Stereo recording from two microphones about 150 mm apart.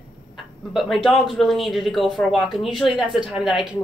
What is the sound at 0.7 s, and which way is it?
A woman's voice, centre (ahead or behind).